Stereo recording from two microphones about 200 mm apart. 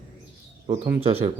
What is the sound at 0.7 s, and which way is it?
Speech, 30° right (ahead or behind).